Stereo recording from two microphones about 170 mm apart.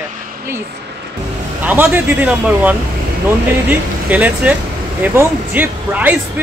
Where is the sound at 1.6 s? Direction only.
10° right (ahead or behind).